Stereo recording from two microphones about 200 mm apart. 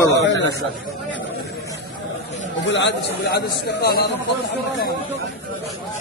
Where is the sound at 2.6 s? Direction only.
60° left (ahead or behind).